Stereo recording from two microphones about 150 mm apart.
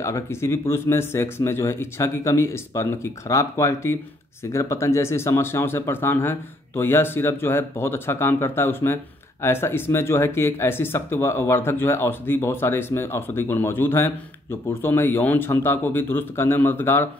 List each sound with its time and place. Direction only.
0.0 s speech: 20° left (ahead or behind)